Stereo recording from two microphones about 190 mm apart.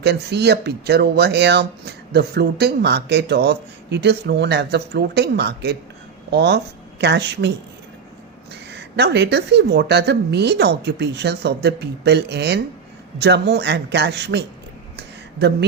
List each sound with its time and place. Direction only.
0.0 s speech: 60° right (ahead or behind)
8.7 s speech: 65° right (ahead or behind)
14.9 s a sound: 65° right (ahead or behind)